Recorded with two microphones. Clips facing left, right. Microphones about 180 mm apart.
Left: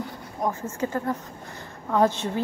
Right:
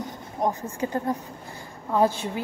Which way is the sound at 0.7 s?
15° right (ahead or behind).